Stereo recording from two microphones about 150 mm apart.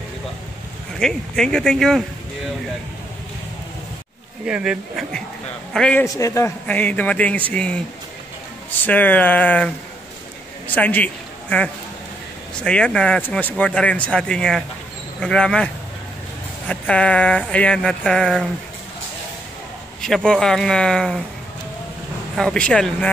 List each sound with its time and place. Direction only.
0.9 s speech: 5° left (ahead or behind)
4.5 s speech: 5° right (ahead or behind)
6.0 s speech: 20° left (ahead or behind)
10.7 s a man's voice: 10° left (ahead or behind)
20.2 s speech: 5° left (ahead or behind)
22.3 s speech: 5° left (ahead or behind)